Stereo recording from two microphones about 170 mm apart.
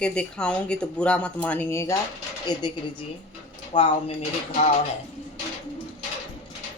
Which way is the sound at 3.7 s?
30° left (ahead or behind).